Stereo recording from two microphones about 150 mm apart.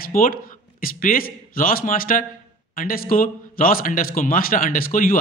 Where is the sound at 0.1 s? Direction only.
65° left (ahead or behind).